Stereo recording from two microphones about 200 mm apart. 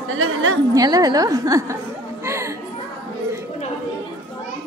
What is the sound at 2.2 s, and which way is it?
Music, 15° right (ahead or behind).